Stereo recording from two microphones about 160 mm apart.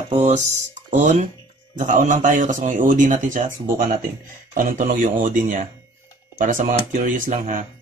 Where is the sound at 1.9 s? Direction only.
55° right (ahead or behind).